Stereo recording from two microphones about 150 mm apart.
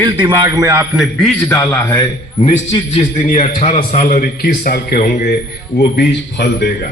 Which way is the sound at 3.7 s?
55° left (ahead or behind).